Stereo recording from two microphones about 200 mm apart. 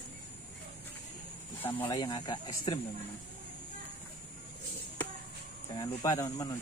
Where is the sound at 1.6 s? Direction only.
10° left (ahead or behind).